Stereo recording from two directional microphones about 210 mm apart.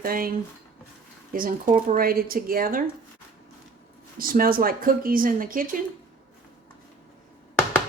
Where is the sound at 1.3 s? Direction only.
40° right (ahead or behind).